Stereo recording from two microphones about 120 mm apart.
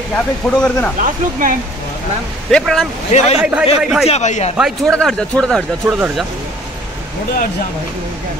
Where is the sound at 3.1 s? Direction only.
70° left (ahead or behind).